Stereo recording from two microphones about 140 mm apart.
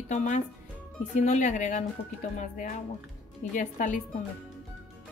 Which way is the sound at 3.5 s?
65° left (ahead or behind).